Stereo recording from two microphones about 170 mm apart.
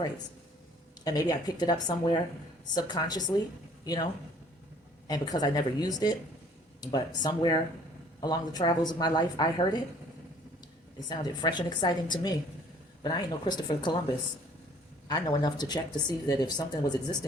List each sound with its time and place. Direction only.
1.0 s speech: 20° left (ahead or behind)
11.1 s speech: 25° left (ahead or behind)
15.0 s speech: 25° left (ahead or behind)